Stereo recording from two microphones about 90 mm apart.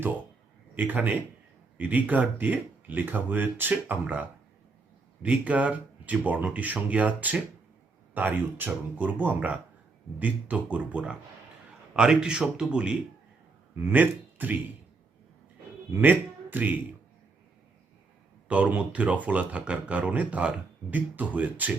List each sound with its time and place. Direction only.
0.8 s speech: 20° right (ahead or behind)
13.7 s speech: 20° right (ahead or behind)
15.9 s speech: 20° right (ahead or behind)
18.4 s speech: 15° right (ahead or behind)